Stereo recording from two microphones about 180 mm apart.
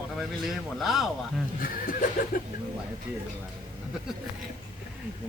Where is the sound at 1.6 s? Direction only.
50° left (ahead or behind).